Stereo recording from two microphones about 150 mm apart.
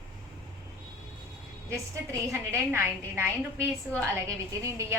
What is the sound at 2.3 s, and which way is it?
A woman's voice, 15° right (ahead or behind).